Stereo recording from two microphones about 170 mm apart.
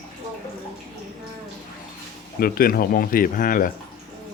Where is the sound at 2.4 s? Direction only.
60° left (ahead or behind).